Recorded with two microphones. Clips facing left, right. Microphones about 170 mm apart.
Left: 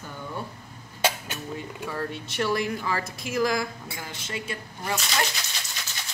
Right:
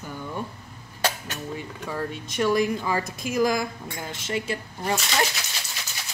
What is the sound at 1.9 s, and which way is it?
Speech, 15° right (ahead or behind).